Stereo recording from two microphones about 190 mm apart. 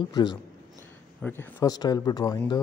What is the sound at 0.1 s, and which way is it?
Speech, 20° left (ahead or behind).